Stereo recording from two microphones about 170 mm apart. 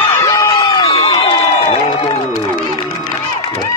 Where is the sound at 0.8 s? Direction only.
30° left (ahead or behind).